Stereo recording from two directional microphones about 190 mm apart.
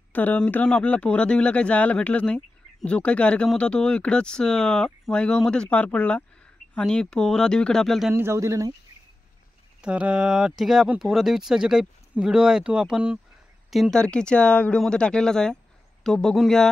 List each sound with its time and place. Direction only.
0.1 s speech: 10° left (ahead or behind)
8.1 s a man's voice: 15° right (ahead or behind)
9.8 s speech: 5° right (ahead or behind)